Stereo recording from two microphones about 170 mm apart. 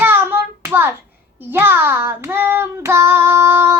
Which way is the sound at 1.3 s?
10° right (ahead or behind).